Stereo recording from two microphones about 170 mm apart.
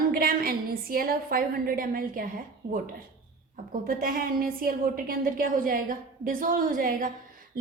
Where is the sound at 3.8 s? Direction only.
55° right (ahead or behind).